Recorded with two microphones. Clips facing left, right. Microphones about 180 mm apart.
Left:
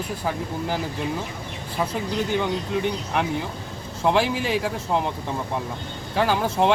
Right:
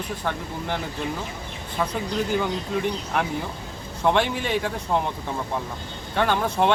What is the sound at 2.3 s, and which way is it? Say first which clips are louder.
Speech: left 2 dB; centre (ahead or behind).